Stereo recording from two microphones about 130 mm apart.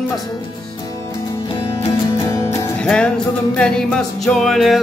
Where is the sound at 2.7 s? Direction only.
5° left (ahead or behind).